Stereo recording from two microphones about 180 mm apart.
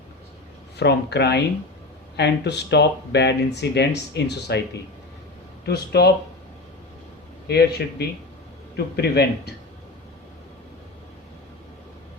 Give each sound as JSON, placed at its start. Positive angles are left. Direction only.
{"t": 0.8, "sound": "speech", "side_deg": 70}
{"t": 5.6, "sound": "a man's voice", "side_deg": 65}
{"t": 7.4, "sound": "a man's voice", "side_deg": 65}